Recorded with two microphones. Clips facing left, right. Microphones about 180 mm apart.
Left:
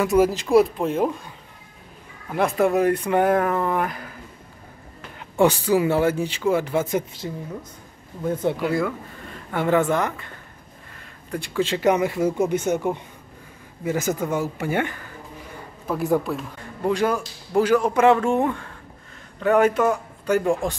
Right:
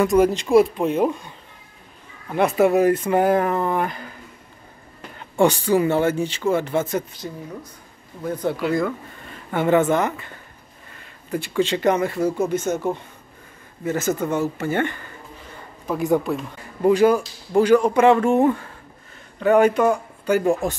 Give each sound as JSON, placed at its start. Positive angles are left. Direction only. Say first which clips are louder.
{"t": 0.0, "sound": "a man's voice", "louder": "right 2 dB", "side_deg": 5}
{"t": 2.3, "sound": "a man's voice", "louder": "right 3 dB", "side_deg": -5}
{"t": 5.4, "sound": "speech", "louder": "right 1 dB", "side_deg": 5}
{"t": 8.2, "sound": "speech", "louder": "left 1 dB", "side_deg": 25}
{"t": 8.6, "sound": "a man's voice", "louder": "right 1 dB", "side_deg": 5}